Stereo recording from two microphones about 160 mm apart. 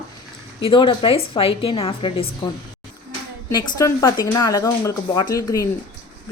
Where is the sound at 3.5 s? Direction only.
25° left (ahead or behind).